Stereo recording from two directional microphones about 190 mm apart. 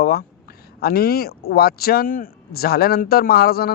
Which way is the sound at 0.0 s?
55° left (ahead or behind).